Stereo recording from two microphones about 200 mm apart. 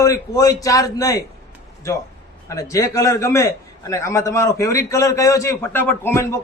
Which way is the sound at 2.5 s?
15° left (ahead or behind).